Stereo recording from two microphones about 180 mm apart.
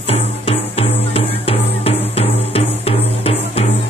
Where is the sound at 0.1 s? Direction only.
30° left (ahead or behind).